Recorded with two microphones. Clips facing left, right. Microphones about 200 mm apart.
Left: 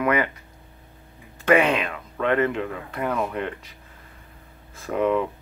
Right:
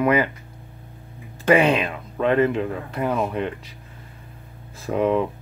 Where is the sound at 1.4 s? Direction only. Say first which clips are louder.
Right 2 dB; 30° right (ahead or behind).